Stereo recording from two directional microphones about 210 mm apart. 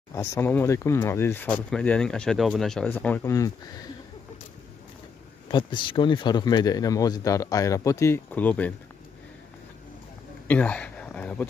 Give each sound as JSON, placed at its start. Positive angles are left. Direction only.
{"t": 0.1, "sound": "speech", "side_deg": 10}
{"t": 5.5, "sound": "speech", "side_deg": 25}
{"t": 10.5, "sound": "speech", "side_deg": 5}